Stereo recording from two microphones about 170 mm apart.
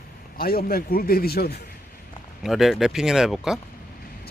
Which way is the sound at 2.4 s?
Centre (ahead or behind).